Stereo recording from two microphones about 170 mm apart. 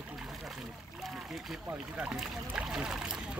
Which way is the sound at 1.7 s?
5° right (ahead or behind).